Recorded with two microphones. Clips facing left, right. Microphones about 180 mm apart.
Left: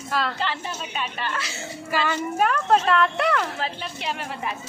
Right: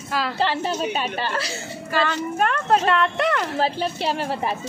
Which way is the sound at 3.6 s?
35° right (ahead or behind).